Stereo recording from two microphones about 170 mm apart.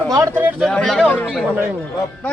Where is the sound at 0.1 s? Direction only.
20° right (ahead or behind).